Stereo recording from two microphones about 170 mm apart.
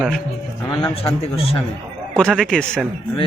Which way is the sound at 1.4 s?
35° left (ahead or behind).